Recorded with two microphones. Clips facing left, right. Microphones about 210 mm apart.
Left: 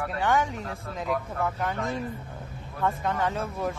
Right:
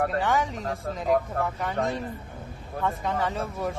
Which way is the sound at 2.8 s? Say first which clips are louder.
Left 1 dB; centre (ahead or behind).